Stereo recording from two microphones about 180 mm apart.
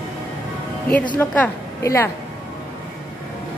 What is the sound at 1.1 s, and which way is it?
Speech, 10° left (ahead or behind).